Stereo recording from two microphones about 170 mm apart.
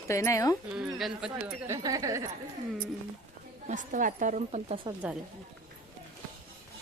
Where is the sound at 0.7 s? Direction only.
5° right (ahead or behind).